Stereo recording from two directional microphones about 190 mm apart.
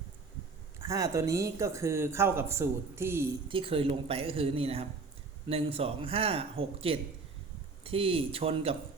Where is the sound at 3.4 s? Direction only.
30° right (ahead or behind).